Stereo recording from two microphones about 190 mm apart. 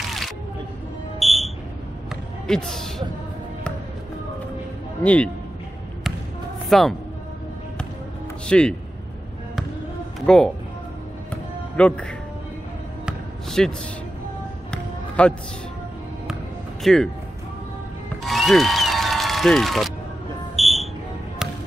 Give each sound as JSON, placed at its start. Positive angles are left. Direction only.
{"t": 1.2, "sound": "smoke detector", "side_deg": 0}
{"t": 2.4, "sound": "speech", "side_deg": 5}
{"t": 5.0, "sound": "a man's voice", "side_deg": 5}
{"t": 6.7, "sound": "speech", "side_deg": 0}
{"t": 8.5, "sound": "speech", "side_deg": 5}
{"t": 10.2, "sound": "speech", "side_deg": 5}
{"t": 11.7, "sound": "speech", "side_deg": 5}
{"t": 13.0, "sound": "basketball bounce", "side_deg": 0}
{"t": 14.7, "sound": "music", "side_deg": 5}
{"t": 16.8, "sound": "speech", "side_deg": 5}
{"t": 18.2, "sound": "applause", "side_deg": 0}
{"t": 20.5, "sound": "a sound", "side_deg": 0}